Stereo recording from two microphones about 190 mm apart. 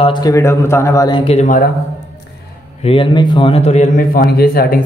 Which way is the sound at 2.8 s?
30° left (ahead or behind).